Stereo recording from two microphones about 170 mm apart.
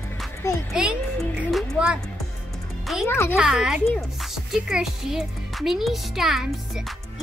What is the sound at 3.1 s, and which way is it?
Speech, 15° left (ahead or behind).